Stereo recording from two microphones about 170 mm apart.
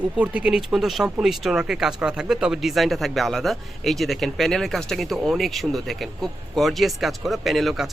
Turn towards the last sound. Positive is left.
turn(degrees=0)  # may be behind; listen again after turning